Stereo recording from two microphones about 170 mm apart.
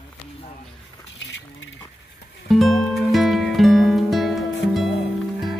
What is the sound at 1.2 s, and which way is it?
Speech, 90° left.